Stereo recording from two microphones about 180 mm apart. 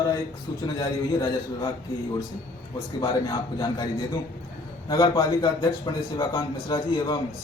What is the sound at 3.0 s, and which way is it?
A man's voice, 20° left (ahead or behind).